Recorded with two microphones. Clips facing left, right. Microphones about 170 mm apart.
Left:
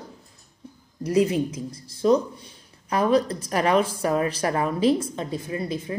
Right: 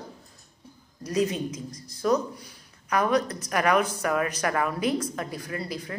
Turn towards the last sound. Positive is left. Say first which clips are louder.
# left 5 dB
turn(degrees=20)  # may be behind; listen again after turning